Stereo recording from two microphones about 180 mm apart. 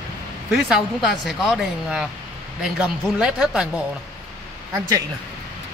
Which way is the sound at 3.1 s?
5° right (ahead or behind).